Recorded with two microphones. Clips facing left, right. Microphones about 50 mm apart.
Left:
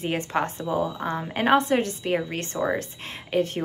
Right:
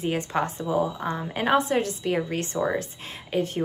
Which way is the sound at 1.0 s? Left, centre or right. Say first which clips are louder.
Left 1 dB; centre.